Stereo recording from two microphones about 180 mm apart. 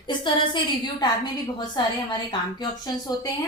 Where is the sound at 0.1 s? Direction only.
25° left (ahead or behind).